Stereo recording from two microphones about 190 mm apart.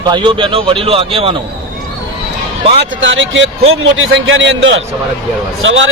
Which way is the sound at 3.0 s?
75° right (ahead or behind).